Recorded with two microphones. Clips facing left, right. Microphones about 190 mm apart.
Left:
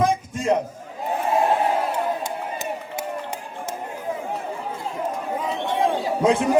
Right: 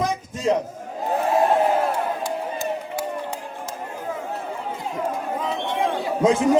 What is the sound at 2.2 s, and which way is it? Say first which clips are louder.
Run: right 2 dB; 20° left (ahead or behind).